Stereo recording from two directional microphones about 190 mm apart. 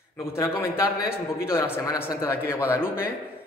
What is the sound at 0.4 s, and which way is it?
A man's voice, 15° left (ahead or behind).